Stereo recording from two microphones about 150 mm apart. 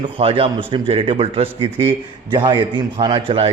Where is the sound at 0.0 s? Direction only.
40° right (ahead or behind).